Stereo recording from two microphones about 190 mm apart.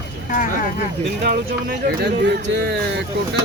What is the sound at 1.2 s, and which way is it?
Speech, 55° right (ahead or behind).